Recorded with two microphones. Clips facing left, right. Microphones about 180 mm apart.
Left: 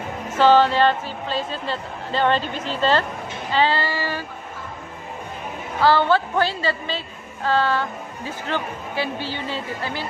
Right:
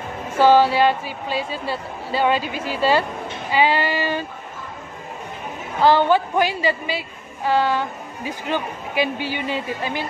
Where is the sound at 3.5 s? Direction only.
15° right (ahead or behind).